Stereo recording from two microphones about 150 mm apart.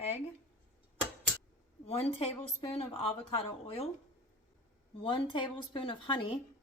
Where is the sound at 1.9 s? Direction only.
40° left (ahead or behind).